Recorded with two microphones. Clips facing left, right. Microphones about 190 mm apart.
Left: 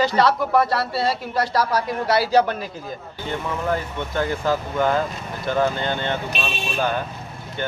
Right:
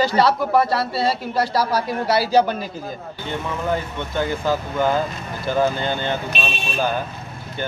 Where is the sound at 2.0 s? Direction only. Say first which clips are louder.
Even; 30° right (ahead or behind).